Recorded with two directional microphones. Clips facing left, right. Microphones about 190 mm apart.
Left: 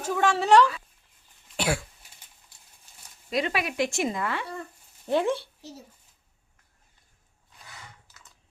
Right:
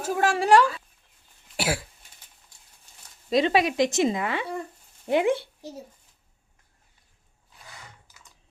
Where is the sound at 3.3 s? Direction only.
25° right (ahead or behind).